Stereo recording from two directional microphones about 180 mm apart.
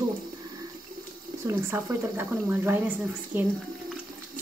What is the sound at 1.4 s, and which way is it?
A woman's voice, 15° right (ahead or behind).